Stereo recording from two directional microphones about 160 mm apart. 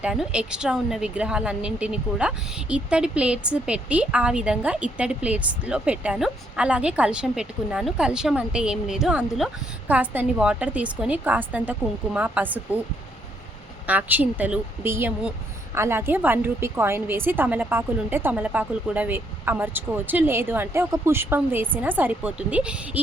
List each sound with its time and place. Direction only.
0.0 s a woman's voice: 5° right (ahead or behind)
13.8 s a woman's voice: 10° right (ahead or behind)